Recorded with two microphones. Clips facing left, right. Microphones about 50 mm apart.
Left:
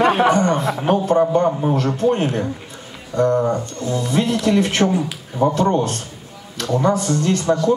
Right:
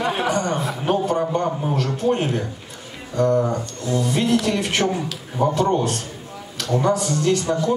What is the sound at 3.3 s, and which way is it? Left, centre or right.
Speech, left.